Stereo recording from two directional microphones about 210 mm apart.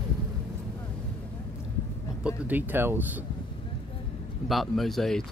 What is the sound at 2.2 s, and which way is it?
Speech, 10° right (ahead or behind).